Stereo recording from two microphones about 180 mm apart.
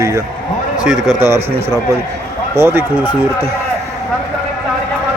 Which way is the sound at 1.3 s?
15° right (ahead or behind).